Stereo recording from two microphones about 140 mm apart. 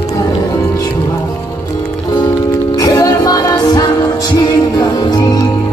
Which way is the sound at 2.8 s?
30° left (ahead or behind).